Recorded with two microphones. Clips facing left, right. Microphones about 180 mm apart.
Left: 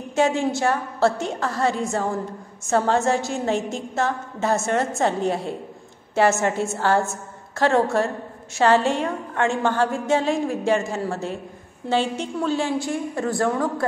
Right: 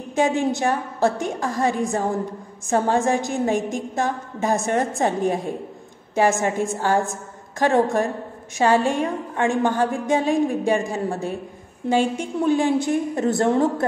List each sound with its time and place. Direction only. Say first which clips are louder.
0.1 s a woman's voice: even; 15° right (ahead or behind)